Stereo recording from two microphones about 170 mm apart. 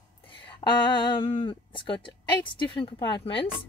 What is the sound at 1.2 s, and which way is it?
Speech, 30° left (ahead or behind).